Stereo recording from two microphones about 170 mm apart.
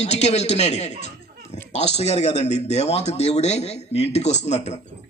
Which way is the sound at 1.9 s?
40° left (ahead or behind).